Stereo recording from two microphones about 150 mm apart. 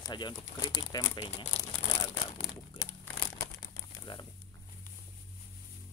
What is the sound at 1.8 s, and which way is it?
Crumpling, 25° left (ahead or behind).